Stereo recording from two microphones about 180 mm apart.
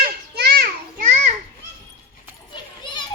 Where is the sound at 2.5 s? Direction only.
25° left (ahead or behind).